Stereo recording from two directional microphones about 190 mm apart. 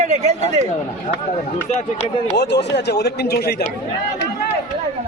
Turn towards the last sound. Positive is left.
turn(degrees=55)  # may be behind; listen again after turning